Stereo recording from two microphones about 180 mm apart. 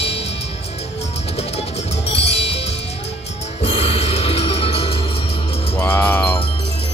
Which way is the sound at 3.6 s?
30° left (ahead or behind).